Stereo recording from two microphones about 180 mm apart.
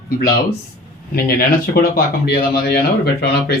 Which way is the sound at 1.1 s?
55° left (ahead or behind).